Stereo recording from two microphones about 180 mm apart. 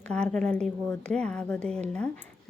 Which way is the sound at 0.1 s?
5° left (ahead or behind).